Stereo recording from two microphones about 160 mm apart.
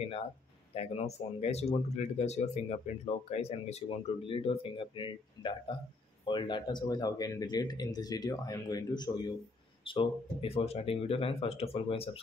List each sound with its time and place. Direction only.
0.7 s speech: 40° left (ahead or behind)